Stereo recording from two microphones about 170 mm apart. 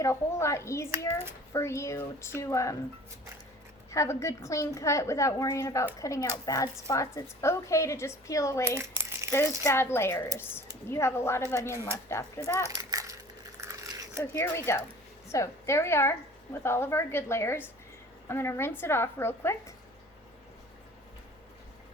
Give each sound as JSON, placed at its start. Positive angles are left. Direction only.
{"t": 0.0, "sound": "a woman's voice", "side_deg": 15}
{"t": 3.9, "sound": "a woman's voice", "side_deg": 15}
{"t": 8.8, "sound": "crumpling", "side_deg": -15}
{"t": 9.6, "sound": "a woman's voice", "side_deg": 15}
{"t": 12.9, "sound": "crushing", "side_deg": -20}
{"t": 13.7, "sound": "a sound", "side_deg": -20}
{"t": 14.3, "sound": "a woman's voice", "side_deg": 15}